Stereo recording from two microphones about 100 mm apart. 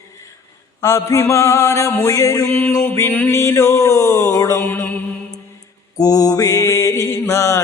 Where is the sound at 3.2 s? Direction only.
30° left (ahead or behind).